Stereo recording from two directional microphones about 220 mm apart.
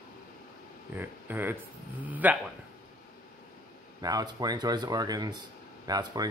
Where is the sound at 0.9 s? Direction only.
10° right (ahead or behind).